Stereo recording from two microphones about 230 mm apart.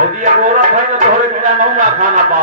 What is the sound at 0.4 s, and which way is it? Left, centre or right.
Speech, right.